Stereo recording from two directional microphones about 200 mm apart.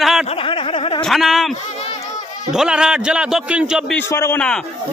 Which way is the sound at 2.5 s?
5° right (ahead or behind).